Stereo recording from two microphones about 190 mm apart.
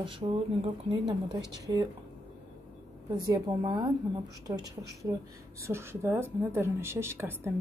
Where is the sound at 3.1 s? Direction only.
20° right (ahead or behind).